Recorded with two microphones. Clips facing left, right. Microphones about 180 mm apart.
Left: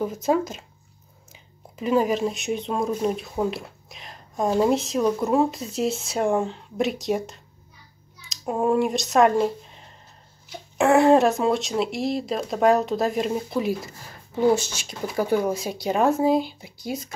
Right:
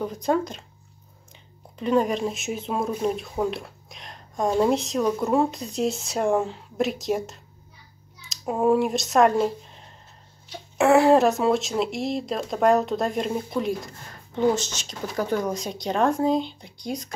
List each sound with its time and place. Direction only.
0.0 s speech: 5° left (ahead or behind)